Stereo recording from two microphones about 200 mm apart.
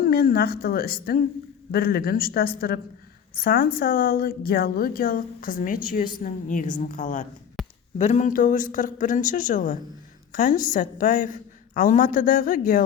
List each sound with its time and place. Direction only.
0.0 s a woman's voice: 50° left (ahead or behind)